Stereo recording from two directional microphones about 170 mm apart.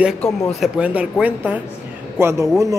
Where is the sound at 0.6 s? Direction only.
5° right (ahead or behind).